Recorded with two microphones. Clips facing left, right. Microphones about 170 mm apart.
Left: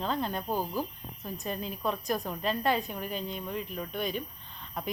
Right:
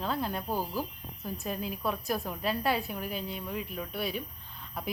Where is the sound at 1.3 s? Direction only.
5° right (ahead or behind).